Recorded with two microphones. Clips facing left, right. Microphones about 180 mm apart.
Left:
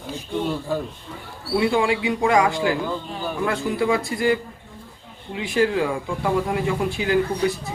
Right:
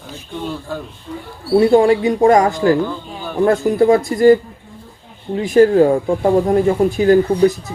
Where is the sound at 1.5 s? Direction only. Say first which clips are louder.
Right 9 dB; 40° right (ahead or behind).